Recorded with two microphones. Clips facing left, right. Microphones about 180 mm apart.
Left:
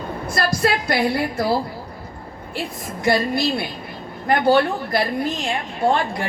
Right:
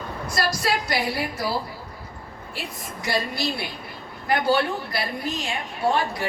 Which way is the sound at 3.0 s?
55° left (ahead or behind).